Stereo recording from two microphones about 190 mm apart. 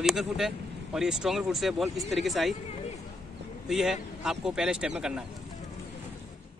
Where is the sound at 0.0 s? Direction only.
Centre (ahead or behind).